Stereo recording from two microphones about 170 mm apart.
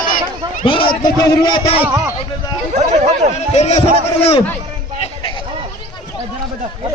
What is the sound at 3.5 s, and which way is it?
Speech, 40° left (ahead or behind).